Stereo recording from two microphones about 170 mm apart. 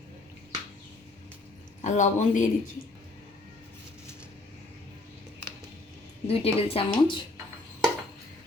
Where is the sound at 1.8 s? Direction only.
45° left (ahead or behind).